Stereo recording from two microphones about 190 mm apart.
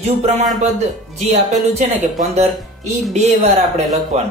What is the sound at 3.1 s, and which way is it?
Speech, 35° right (ahead or behind).